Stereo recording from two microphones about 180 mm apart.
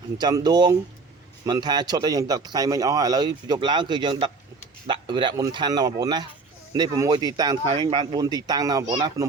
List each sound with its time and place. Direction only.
0.2 s a man's voice: 25° right (ahead or behind)